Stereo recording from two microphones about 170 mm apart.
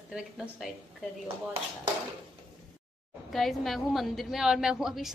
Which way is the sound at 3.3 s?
Centre (ahead or behind).